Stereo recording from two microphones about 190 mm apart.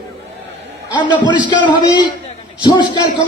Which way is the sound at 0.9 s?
25° left (ahead or behind).